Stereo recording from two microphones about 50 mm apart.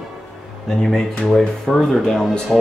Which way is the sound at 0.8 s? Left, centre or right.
Centre.